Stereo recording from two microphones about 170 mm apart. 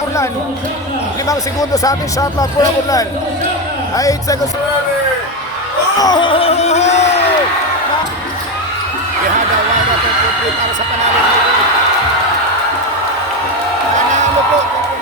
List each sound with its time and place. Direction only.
1.3 s speech: 20° left (ahead or behind)
6.0 s speech: 25° left (ahead or behind); by 7.1 s 40° left (ahead or behind)